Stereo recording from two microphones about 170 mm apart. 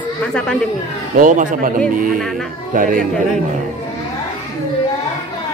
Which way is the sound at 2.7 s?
55° right (ahead or behind).